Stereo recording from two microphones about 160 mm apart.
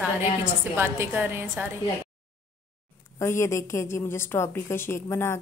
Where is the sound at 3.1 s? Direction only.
15° left (ahead or behind).